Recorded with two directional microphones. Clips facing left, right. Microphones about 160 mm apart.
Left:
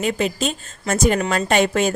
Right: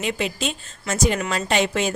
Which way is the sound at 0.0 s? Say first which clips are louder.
Left 4 dB; 45° left (ahead or behind).